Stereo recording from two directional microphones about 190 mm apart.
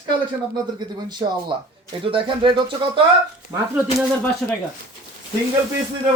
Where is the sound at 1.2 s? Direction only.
25° right (ahead or behind).